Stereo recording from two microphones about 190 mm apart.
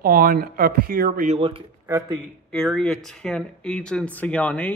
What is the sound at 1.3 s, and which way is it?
Speech, 30° right (ahead or behind).